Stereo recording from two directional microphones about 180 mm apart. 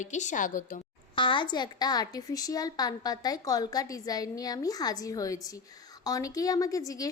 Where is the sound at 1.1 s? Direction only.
25° left (ahead or behind).